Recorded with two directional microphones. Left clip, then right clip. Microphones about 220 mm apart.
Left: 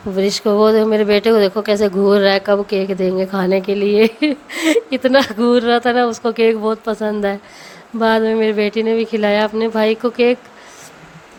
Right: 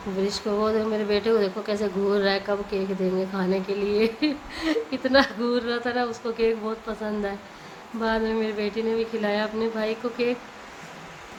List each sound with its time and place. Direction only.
0.2 s speech: 40° left (ahead or behind)